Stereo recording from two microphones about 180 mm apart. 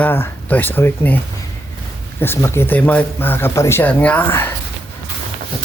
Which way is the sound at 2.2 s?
15° left (ahead or behind).